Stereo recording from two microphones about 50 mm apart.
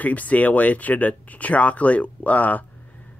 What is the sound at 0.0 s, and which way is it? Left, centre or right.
Speech, left.